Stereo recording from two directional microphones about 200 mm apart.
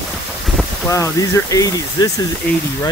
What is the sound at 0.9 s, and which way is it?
Speech, 15° left (ahead or behind).